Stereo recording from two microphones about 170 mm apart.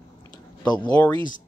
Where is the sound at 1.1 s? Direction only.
25° left (ahead or behind).